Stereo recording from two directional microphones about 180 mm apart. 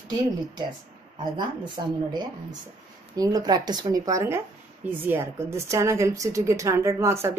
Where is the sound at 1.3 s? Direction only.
25° right (ahead or behind).